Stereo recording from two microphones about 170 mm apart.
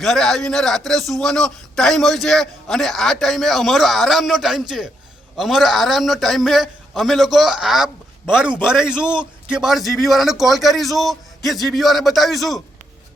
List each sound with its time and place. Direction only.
0.0 s a man's voice: centre (ahead or behind)